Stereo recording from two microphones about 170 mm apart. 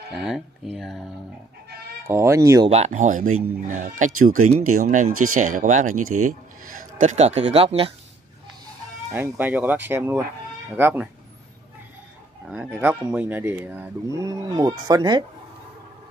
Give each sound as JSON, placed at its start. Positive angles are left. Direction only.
{"t": 0.1, "sound": "speech", "side_deg": 0}
{"t": 2.0, "sound": "speech", "side_deg": -15}
{"t": 2.7, "sound": "speech", "side_deg": -45}
{"t": 9.1, "sound": "speech", "side_deg": -10}
{"t": 12.4, "sound": "speech", "side_deg": -5}
{"t": 14.1, "sound": "speech", "side_deg": -20}